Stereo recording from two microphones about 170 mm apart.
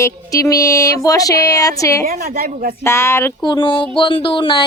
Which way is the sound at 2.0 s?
55° right (ahead or behind).